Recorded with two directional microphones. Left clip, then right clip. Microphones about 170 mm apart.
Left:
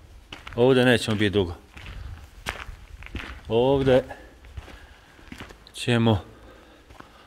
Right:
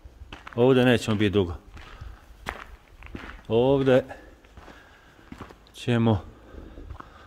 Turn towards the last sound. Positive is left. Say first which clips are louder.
# left 2 dB
turn(degrees=-10)  # may be behind; listen again after turning